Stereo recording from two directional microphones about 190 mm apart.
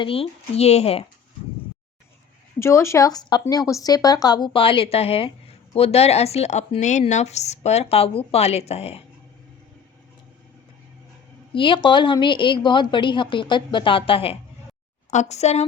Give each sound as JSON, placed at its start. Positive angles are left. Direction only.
{"t": 0.0, "sound": "speech", "side_deg": 30}
{"t": 2.6, "sound": "a woman's voice", "side_deg": 15}
{"t": 11.5, "sound": "a woman's voice", "side_deg": 25}